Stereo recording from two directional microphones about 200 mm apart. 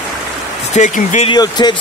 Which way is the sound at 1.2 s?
20° left (ahead or behind).